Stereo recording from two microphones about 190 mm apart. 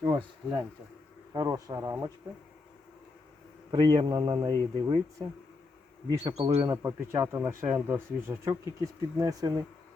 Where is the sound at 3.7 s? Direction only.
25° right (ahead or behind).